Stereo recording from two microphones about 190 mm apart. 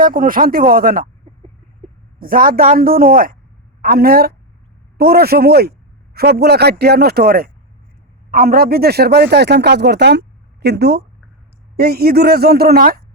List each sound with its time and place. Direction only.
0.0 s speech: 45° right (ahead or behind)
2.1 s a woman's voice: 50° right (ahead or behind)